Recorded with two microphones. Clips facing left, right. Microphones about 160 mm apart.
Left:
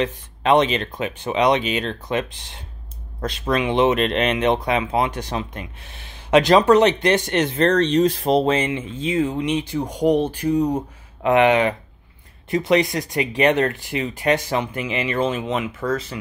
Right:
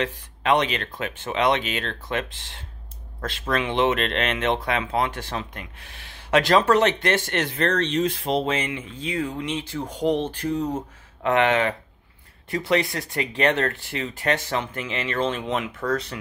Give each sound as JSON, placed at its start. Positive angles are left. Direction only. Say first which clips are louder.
{"t": 0.0, "sound": "speech", "louder": "left 4 dB", "side_deg": 25}
{"t": 7.6, "sound": "speech", "louder": "left 6 dB", "side_deg": 35}